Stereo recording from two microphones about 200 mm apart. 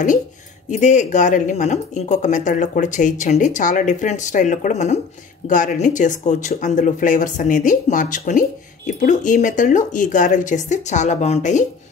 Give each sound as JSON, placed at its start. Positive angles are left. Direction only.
{"t": 0.7, "sound": "speech", "side_deg": 35}